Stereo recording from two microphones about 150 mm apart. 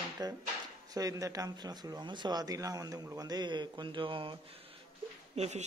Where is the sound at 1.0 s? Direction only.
25° right (ahead or behind).